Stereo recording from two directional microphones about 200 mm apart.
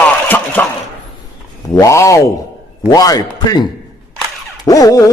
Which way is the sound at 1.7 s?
15° left (ahead or behind).